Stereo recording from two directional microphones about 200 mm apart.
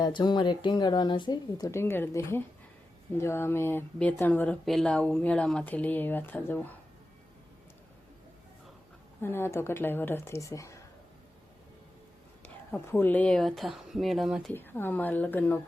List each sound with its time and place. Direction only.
0.0 s speech: 20° left (ahead or behind)
9.2 s speech: 10° left (ahead or behind)
12.7 s speech: 10° left (ahead or behind)
14.5 s speech: 10° left (ahead or behind)